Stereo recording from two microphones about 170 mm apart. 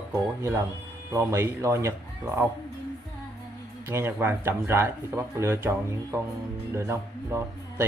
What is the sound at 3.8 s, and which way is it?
Speech, 15° right (ahead or behind).